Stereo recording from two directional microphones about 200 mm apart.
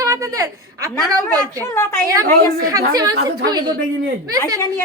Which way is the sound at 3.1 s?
55° right (ahead or behind).